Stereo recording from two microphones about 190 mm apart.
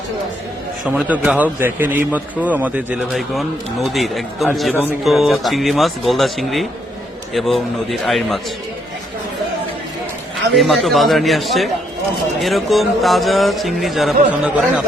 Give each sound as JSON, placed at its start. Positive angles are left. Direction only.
{"t": 0.9, "sound": "a man's voice", "side_deg": -5}
{"t": 10.5, "sound": "a man's voice", "side_deg": 0}